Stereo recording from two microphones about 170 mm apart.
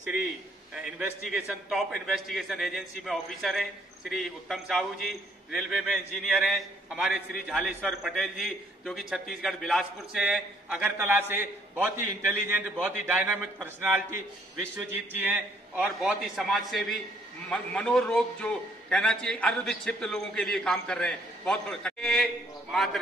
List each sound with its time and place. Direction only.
0.8 s a man's voice: 5° right (ahead or behind)